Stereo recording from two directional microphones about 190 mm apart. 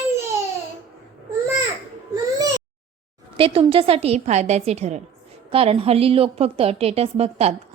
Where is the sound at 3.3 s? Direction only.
30° right (ahead or behind).